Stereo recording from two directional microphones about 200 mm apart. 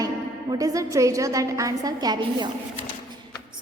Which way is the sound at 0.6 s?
15° right (ahead or behind).